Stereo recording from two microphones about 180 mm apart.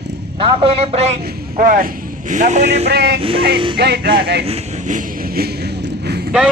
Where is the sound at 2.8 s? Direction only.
65° right (ahead or behind).